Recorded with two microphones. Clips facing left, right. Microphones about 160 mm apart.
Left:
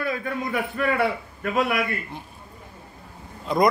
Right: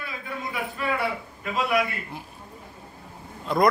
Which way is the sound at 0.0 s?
55° left (ahead or behind).